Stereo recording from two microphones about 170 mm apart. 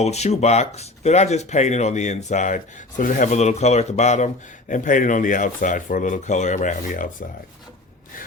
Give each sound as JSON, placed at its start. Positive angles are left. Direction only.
{"t": 0.0, "sound": "speech", "side_deg": 40}